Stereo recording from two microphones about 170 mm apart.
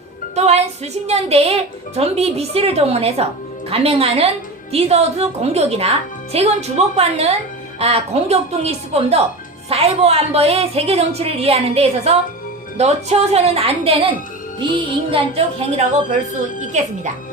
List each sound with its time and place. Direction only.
0.3 s music: 40° right (ahead or behind)
1.0 s a woman's voice: 40° right (ahead or behind)
14.7 s music: 30° right (ahead or behind)
16.7 s speech: 45° right (ahead or behind)